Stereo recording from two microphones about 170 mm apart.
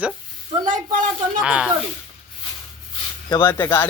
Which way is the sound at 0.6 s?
50° right (ahead or behind).